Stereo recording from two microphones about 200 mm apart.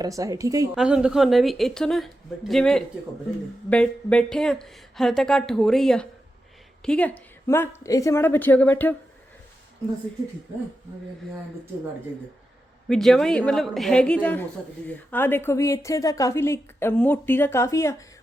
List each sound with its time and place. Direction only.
0.0 s a woman's voice: 15° right (ahead or behind)
0.8 s speech: 5° right (ahead or behind)
12.9 s speech: centre (ahead or behind)